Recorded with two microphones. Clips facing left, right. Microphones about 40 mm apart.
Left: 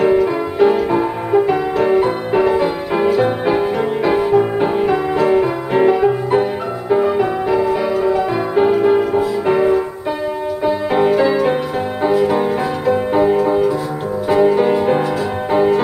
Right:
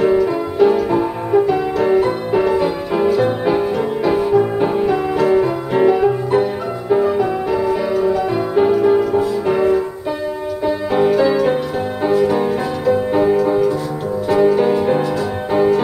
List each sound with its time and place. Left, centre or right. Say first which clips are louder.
0.0 s music: left 1 dB; left